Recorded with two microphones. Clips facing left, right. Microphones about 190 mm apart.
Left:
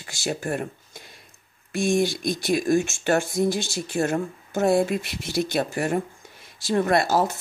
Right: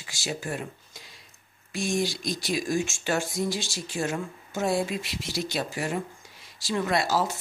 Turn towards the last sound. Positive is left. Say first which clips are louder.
# left 5 dB
turn(degrees=55)  # may be behind; listen again after turning